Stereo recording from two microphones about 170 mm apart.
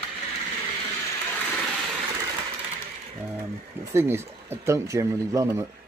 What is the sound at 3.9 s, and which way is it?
Speech, 15° right (ahead or behind).